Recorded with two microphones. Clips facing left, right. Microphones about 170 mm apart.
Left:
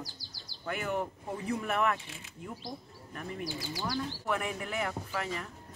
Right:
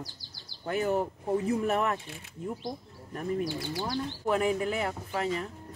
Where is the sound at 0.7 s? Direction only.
35° right (ahead or behind).